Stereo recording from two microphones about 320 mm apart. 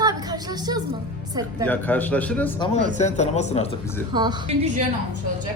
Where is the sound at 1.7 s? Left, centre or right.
Centre.